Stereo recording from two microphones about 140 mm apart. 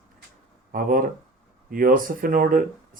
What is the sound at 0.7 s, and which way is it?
Speech, 90° right.